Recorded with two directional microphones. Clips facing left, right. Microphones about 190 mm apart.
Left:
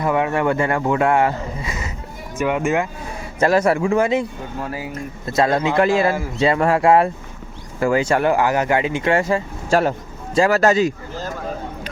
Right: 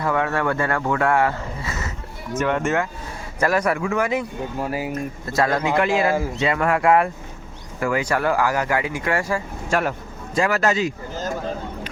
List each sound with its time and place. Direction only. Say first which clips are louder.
0.0 s speech: left 3 dB; 15° left (ahead or behind)
3.4 s speech: left 4 dB; 25° left (ahead or behind)